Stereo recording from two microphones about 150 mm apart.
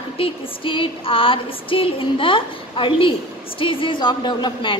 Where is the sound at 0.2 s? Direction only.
35° left (ahead or behind).